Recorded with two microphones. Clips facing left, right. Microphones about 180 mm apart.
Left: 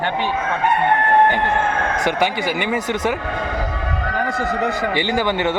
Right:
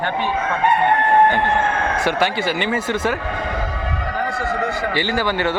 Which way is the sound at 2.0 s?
15° left (ahead or behind).